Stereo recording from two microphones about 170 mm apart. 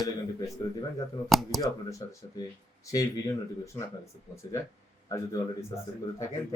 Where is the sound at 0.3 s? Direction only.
20° left (ahead or behind).